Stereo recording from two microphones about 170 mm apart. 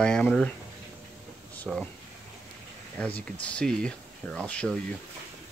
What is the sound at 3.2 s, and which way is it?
Speech, 5° left (ahead or behind).